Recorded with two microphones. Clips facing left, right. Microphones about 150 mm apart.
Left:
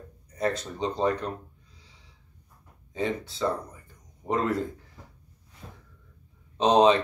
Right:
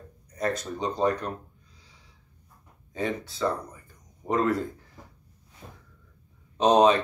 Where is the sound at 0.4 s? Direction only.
25° left (ahead or behind).